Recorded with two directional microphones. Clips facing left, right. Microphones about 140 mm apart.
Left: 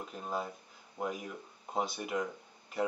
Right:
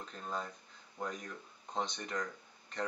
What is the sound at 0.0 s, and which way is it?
Speech, 10° left (ahead or behind).